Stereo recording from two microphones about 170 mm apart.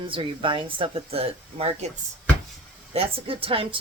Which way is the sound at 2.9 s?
35° right (ahead or behind).